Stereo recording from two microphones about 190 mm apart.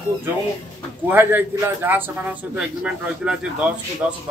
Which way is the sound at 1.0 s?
10° right (ahead or behind).